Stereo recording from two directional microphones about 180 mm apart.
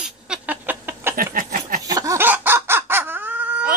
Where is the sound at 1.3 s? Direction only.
50° right (ahead or behind).